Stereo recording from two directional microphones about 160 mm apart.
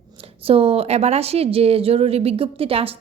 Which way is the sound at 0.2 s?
35° right (ahead or behind).